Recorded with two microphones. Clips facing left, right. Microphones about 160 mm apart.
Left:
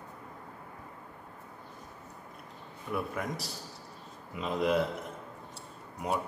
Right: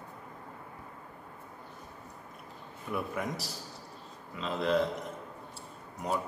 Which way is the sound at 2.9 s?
Centre (ahead or behind).